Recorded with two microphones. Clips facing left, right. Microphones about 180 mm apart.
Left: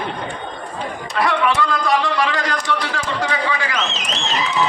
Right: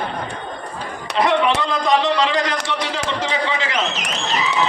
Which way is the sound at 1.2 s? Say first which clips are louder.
Right 1 dB; 20° right (ahead or behind).